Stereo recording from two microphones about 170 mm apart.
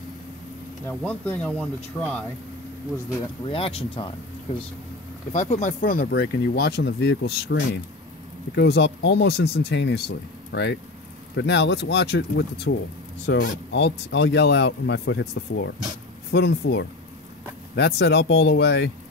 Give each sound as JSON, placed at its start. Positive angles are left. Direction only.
{"t": 0.8, "sound": "speech", "side_deg": 10}
{"t": 3.4, "sound": "speech", "side_deg": 30}
{"t": 5.3, "sound": "speech", "side_deg": 45}